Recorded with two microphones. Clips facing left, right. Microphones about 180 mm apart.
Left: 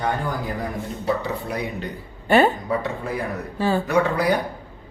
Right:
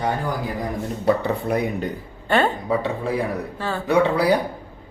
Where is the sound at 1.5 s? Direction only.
50° right (ahead or behind).